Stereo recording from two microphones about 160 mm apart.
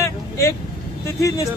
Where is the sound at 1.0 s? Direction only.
20° left (ahead or behind).